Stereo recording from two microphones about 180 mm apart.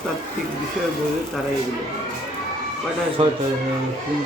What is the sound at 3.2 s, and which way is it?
Speech, 30° right (ahead or behind).